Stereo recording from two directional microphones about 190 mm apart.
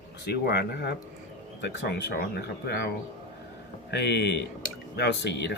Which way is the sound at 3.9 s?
65° left (ahead or behind).